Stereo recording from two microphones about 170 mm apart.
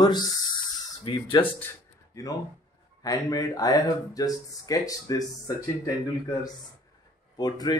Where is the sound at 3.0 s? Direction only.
20° left (ahead or behind).